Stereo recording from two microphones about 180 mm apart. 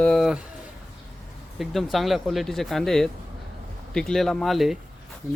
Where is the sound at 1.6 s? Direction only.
Centre (ahead or behind).